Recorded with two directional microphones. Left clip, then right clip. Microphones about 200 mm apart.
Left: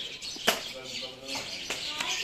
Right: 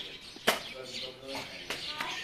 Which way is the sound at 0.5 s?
5° left (ahead or behind).